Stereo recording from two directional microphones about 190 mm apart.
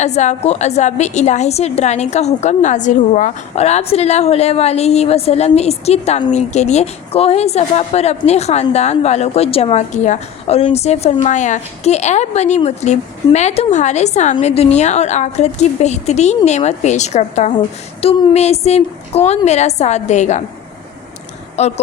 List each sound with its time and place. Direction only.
0.0 s a woman's voice: 35° left (ahead or behind)
21.6 s a woman's voice: 35° left (ahead or behind)